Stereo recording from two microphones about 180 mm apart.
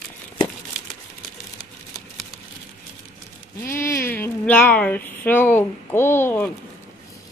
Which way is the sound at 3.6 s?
15° left (ahead or behind).